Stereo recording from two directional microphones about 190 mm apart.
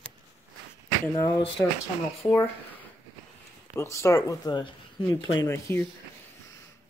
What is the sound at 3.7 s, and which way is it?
Speech, 15° left (ahead or behind).